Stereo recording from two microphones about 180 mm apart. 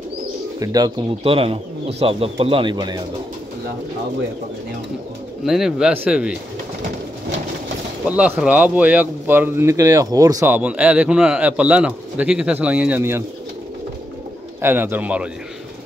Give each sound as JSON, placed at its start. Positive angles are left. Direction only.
{"t": 0.6, "sound": "speech", "side_deg": -20}
{"t": 1.2, "sound": "speech", "side_deg": -30}
{"t": 5.4, "sound": "speech", "side_deg": 0}
{"t": 8.1, "sound": "speech", "side_deg": -5}
{"t": 14.6, "sound": "speech", "side_deg": -10}